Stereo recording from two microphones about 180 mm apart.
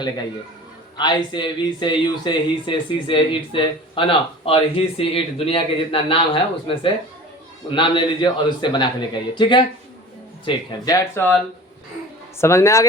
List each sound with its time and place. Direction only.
0.9 s speech: 25° left (ahead or behind)